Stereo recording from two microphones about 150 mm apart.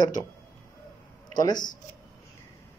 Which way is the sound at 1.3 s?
30° left (ahead or behind).